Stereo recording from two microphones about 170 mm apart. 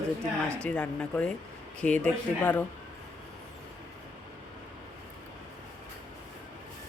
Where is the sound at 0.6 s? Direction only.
5° left (ahead or behind).